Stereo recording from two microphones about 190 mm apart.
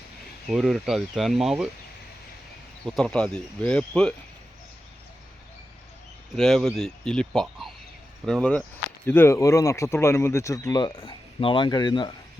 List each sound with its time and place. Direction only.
0.5 s speech: centre (ahead or behind)
2.8 s speech: centre (ahead or behind)
6.3 s speech: centre (ahead or behind); by 12.1 s 25° left (ahead or behind)